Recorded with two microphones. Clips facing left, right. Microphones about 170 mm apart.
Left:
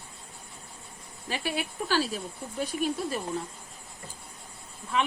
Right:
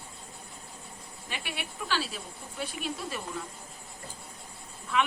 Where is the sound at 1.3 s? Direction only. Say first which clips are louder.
Left 7 dB; 35° left (ahead or behind).